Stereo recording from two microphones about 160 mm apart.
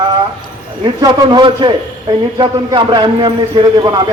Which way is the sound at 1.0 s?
30° right (ahead or behind).